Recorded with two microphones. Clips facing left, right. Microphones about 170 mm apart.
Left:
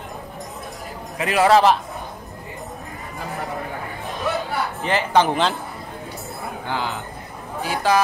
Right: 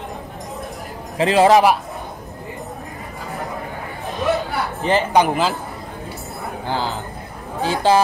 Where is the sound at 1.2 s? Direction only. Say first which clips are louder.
Right 4 dB; 25° right (ahead or behind).